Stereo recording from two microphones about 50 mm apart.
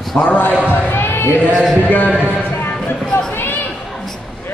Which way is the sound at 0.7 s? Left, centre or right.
Left.